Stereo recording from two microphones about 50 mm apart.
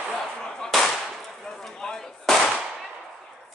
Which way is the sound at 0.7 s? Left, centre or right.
Centre.